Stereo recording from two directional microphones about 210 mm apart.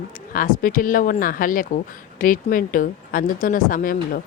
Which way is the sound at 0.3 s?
40° left (ahead or behind).